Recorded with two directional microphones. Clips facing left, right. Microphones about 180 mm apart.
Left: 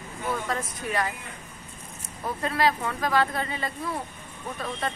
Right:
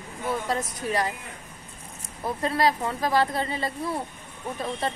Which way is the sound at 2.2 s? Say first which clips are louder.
Right 1 dB; 30° right (ahead or behind).